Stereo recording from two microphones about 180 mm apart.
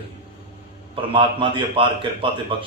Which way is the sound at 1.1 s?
30° right (ahead or behind).